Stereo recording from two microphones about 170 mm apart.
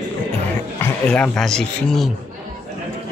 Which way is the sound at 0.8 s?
5° left (ahead or behind).